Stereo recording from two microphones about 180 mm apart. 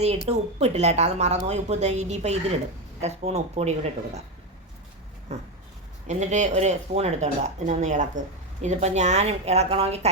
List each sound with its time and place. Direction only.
0.3 s speech: 35° right (ahead or behind)
5.3 s speech: 35° right (ahead or behind)